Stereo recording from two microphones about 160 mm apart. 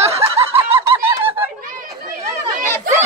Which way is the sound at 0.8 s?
15° right (ahead or behind).